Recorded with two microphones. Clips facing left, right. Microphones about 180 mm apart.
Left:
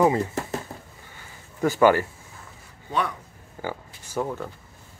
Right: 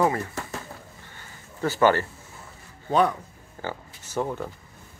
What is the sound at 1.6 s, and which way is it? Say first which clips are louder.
Speech: left 2 dB; 15° left (ahead or behind).